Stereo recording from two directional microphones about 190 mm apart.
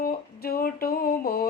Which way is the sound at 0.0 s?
50° left (ahead or behind).